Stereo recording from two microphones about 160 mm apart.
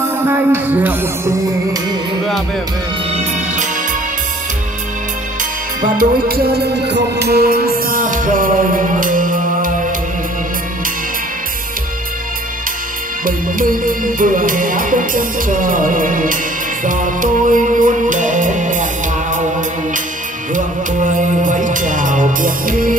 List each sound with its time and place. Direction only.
0.2 s speech: 15° right (ahead or behind)
5.4 s music: 60° right (ahead or behind)
13.2 s music: 60° right (ahead or behind)
20.5 s music: 55° right (ahead or behind)